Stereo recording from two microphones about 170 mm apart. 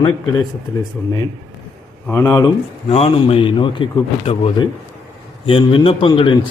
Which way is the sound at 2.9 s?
35° left (ahead or behind).